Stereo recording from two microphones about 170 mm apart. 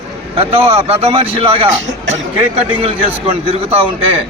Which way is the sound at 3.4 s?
35° right (ahead or behind).